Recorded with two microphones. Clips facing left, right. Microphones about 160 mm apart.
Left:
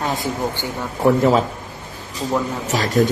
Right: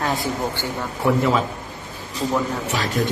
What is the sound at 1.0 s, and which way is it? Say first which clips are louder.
Speech: left 4 dB; 40° left (ahead or behind).